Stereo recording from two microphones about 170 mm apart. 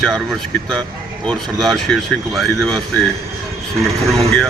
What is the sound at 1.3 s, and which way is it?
Speech, centre (ahead or behind).